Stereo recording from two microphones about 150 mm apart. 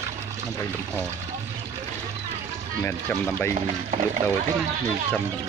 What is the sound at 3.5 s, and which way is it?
Speech, 50° right (ahead or behind).